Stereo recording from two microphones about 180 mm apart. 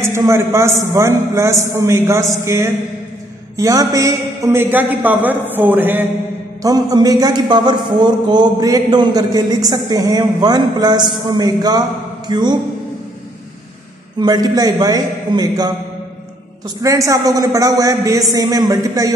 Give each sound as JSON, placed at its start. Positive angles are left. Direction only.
{"t": 0.0, "sound": "a man's voice", "side_deg": -15}
{"t": 14.2, "sound": "a man's voice", "side_deg": -20}
{"t": 16.8, "sound": "a man's voice", "side_deg": -15}